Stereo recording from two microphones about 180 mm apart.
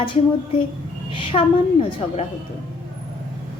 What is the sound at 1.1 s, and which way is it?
A woman's voice, 30° left (ahead or behind).